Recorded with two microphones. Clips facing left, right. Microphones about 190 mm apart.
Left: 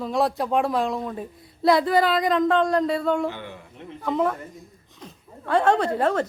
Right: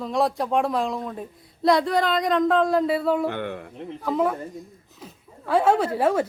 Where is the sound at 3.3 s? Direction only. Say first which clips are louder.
Right 7 dB; 60° right (ahead or behind).